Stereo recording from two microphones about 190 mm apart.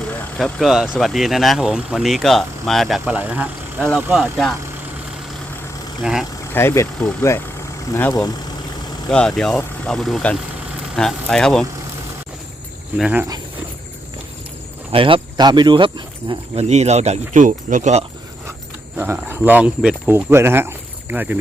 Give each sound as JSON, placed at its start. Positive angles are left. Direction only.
{"t": 0.0, "sound": "vehicle", "side_deg": 5}
{"t": 0.9, "sound": "speech", "side_deg": 0}
{"t": 6.0, "sound": "speech", "side_deg": 0}
{"t": 6.4, "sound": "speech", "side_deg": 15}
{"t": 9.0, "sound": "speech", "side_deg": 5}
{"t": 13.0, "sound": "speech", "side_deg": -10}
{"t": 14.9, "sound": "speech", "side_deg": -25}
{"t": 18.9, "sound": "speech", "side_deg": -10}